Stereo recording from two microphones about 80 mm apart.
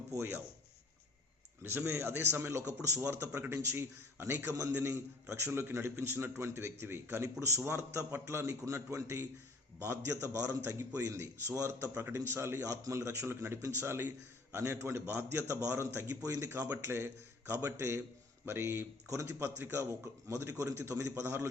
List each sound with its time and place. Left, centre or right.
0.1 s a man's voice: right
1.9 s a man's voice: right
4.3 s a man's voice: right
4.8 s a man's voice: right
16.6 s a man's voice: right